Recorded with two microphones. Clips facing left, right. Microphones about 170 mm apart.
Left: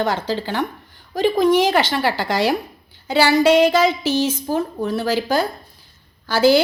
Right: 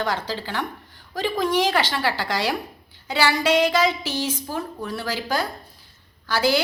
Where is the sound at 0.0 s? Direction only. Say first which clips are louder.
Left 5 dB; 25° left (ahead or behind).